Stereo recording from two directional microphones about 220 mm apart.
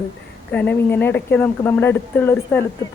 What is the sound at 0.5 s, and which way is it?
Speech, 5° left (ahead or behind).